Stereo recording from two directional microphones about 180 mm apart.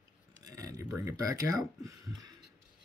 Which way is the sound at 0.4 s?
20° right (ahead or behind).